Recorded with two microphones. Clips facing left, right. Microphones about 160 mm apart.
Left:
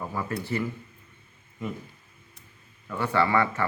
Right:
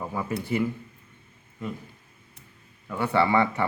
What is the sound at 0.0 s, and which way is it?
Speech, 10° right (ahead or behind).